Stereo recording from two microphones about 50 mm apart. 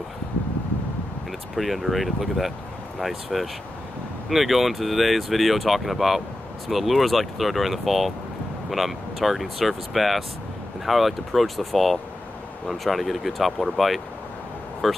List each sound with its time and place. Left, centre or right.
1.5 s speech: centre